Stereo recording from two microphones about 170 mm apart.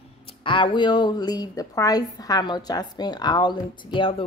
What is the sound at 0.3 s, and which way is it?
A woman's voice, 30° left (ahead or behind).